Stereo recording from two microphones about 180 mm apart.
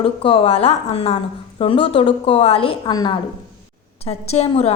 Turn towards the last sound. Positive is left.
turn(degrees=35)  # may be behind; listen again after turning